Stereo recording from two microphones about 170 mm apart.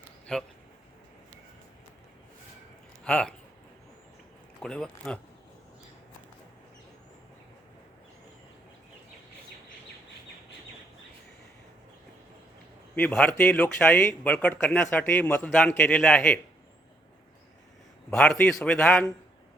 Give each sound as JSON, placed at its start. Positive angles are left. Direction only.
{"t": 3.0, "sound": "speech", "side_deg": 5}
{"t": 4.6, "sound": "a man's voice", "side_deg": 5}
{"t": 13.0, "sound": "a man's voice", "side_deg": 5}
{"t": 18.1, "sound": "a man's voice", "side_deg": 5}